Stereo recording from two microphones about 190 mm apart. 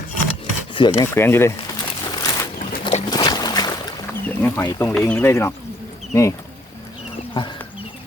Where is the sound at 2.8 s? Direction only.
25° left (ahead or behind).